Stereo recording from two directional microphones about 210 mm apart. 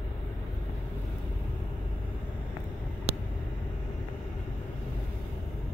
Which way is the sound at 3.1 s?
30° right (ahead or behind).